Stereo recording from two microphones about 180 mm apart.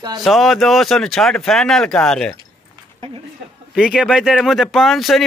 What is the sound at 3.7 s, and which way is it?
Speech, 5° right (ahead or behind).